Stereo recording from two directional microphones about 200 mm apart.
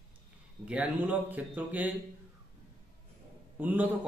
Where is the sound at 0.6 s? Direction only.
5° right (ahead or behind).